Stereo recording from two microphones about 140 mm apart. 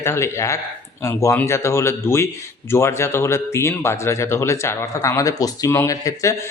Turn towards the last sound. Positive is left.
turn(degrees=25)  # may be behind; listen again after turning